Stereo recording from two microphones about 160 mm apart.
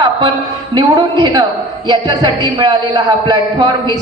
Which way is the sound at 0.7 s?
25° right (ahead or behind).